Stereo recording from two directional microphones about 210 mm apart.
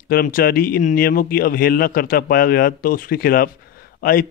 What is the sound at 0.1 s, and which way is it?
Speech, 45° left (ahead or behind).